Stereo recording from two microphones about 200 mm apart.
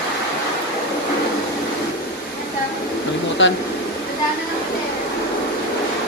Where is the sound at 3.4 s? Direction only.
70° left (ahead or behind).